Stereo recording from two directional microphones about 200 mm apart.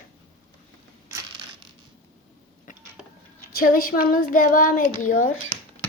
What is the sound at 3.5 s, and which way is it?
Child singing, 45° left (ahead or behind).